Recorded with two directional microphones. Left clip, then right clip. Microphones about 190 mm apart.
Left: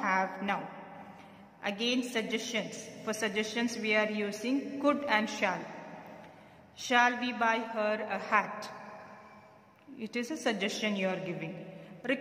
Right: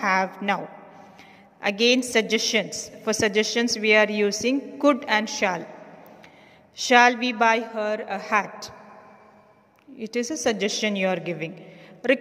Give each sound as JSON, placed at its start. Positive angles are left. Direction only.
{"t": 0.0, "sound": "a woman's voice", "side_deg": -35}
{"t": 1.6, "sound": "a woman's voice", "side_deg": -35}
{"t": 6.8, "sound": "a woman's voice", "side_deg": -35}
{"t": 7.7, "sound": "a woman's voice", "side_deg": -20}
{"t": 9.9, "sound": "a woman's voice", "side_deg": -25}